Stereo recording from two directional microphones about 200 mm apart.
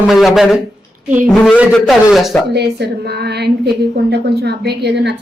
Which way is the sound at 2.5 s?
55° right (ahead or behind).